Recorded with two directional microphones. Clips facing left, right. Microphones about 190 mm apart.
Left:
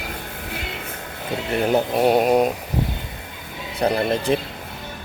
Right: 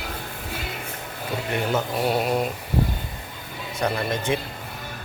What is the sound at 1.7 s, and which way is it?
Speech, 45° left (ahead or behind).